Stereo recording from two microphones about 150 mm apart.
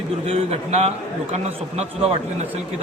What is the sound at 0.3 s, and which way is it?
A man's voice, 45° right (ahead or behind).